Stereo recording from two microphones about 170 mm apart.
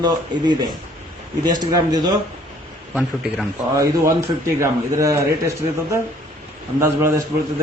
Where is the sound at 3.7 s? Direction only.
20° right (ahead or behind).